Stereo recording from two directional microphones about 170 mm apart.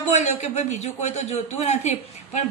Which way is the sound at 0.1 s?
45° left (ahead or behind).